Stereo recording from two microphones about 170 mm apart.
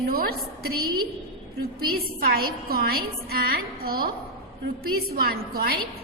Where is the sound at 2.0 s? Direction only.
60° right (ahead or behind).